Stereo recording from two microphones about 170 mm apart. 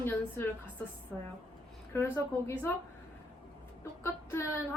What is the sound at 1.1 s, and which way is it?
Speech, centre (ahead or behind).